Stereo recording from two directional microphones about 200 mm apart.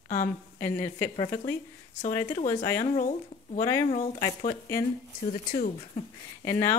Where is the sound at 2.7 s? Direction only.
40° left (ahead or behind).